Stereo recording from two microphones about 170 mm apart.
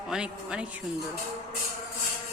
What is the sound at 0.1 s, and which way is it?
Speech, 5° right (ahead or behind).